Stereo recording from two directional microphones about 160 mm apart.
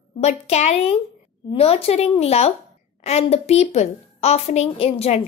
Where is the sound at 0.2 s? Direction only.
45° left (ahead or behind).